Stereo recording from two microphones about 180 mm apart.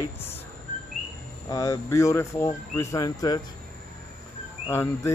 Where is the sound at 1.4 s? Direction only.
20° left (ahead or behind).